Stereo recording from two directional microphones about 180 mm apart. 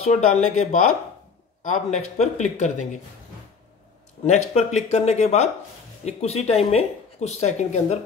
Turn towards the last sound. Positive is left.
turn(degrees=40)  # may be behind; listen again after turning